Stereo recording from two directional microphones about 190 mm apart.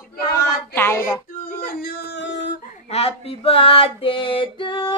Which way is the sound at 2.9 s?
30° left (ahead or behind).